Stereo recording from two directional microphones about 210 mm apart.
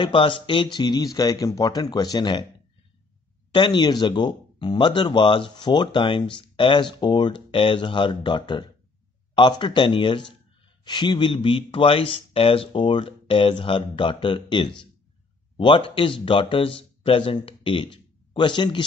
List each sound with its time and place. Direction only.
0.0 s speech: 25° left (ahead or behind)
3.5 s speech: 20° left (ahead or behind)